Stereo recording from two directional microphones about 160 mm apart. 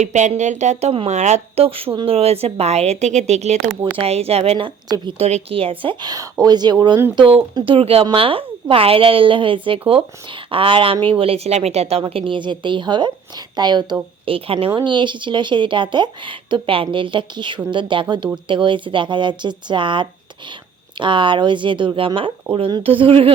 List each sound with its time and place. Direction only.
0.0 s a woman's voice: 45° right (ahead or behind)